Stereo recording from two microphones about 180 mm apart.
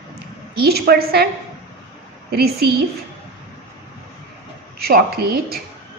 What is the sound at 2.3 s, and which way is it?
Speech, 60° right (ahead or behind).